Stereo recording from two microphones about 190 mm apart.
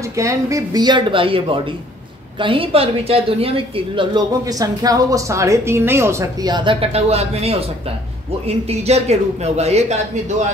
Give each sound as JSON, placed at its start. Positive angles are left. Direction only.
{"t": 0.1, "sound": "a woman's voice", "side_deg": -15}